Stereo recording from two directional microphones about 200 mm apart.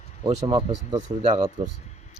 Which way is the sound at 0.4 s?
20° right (ahead or behind).